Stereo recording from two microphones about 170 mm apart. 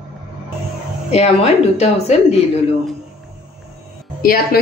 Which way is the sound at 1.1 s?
40° left (ahead or behind).